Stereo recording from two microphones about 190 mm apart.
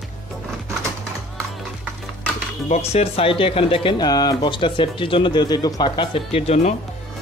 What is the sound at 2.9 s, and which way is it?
Speech, 30° left (ahead or behind).